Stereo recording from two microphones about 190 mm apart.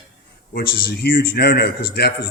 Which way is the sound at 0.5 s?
55° left (ahead or behind).